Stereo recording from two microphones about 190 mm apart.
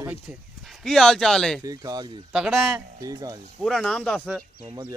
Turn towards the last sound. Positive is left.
turn(degrees=-20)  # may be behind; listen again after turning